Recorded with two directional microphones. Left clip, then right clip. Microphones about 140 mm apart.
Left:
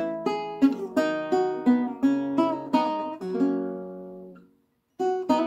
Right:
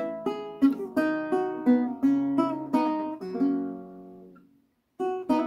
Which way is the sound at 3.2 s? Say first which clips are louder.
Left 2 dB; 35° left (ahead or behind).